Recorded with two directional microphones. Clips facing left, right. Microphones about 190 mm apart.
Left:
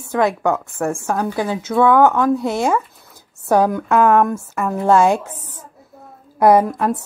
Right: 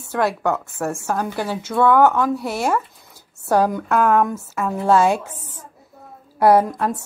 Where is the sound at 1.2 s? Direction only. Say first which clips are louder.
Left 4 dB; 5° right (ahead or behind).